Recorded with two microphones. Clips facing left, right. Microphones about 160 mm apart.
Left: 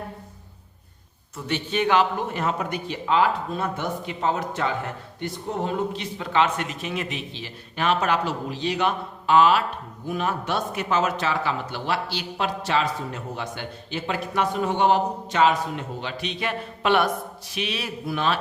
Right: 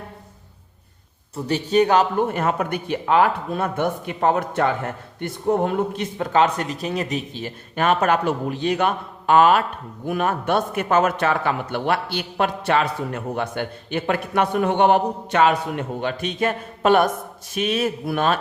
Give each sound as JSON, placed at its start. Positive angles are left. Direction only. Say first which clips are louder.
{"t": 1.5, "sound": "a man's voice", "louder": "right 5 dB", "side_deg": -40}